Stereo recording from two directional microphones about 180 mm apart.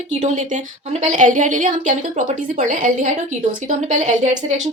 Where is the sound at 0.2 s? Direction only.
40° right (ahead or behind).